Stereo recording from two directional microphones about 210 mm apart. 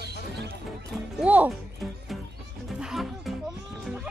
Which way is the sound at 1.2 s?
5° right (ahead or behind).